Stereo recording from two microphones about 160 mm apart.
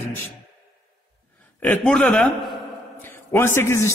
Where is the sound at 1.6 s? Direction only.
5° left (ahead or behind).